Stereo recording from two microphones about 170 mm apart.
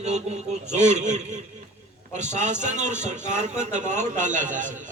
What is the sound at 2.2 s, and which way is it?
A man's voice, 45° right (ahead or behind).